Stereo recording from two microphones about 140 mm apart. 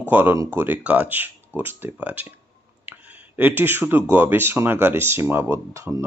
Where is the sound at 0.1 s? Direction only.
15° right (ahead or behind).